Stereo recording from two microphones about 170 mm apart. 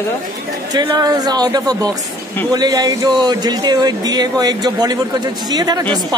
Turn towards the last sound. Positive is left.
turn(degrees=-25)  # may be behind; listen again after turning